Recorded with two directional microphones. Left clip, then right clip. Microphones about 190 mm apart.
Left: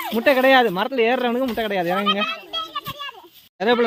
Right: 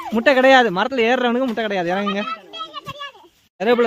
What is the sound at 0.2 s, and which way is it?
Speech, 25° right (ahead or behind).